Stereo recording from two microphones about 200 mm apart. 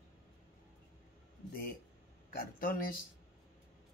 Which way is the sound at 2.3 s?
45° left (ahead or behind).